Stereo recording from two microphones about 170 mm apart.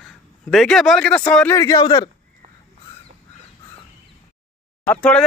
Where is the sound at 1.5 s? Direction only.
20° left (ahead or behind).